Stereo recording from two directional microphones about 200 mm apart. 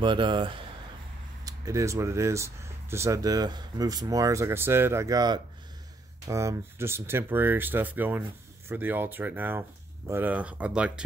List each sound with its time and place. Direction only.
0.0 s speech: 25° right (ahead or behind); by 10.9 s 5° right (ahead or behind)